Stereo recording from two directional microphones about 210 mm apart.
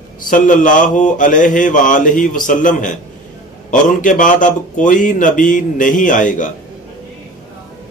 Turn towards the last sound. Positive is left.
turn(degrees=40)  # may be behind; listen again after turning